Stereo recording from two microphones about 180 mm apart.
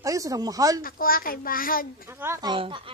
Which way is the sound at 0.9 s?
55° left (ahead or behind).